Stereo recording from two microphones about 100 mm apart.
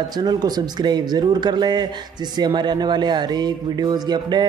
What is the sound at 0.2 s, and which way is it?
Speech, 45° right (ahead or behind).